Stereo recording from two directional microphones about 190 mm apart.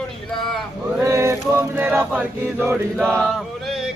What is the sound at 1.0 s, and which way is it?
Chant, 15° right (ahead or behind).